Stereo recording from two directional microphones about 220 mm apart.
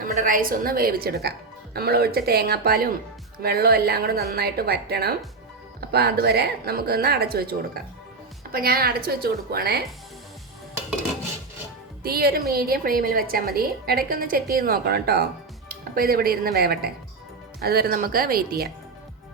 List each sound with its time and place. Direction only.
0.0 s a woman's voice: 40° right (ahead or behind)
12.0 s a woman's voice: 45° right (ahead or behind)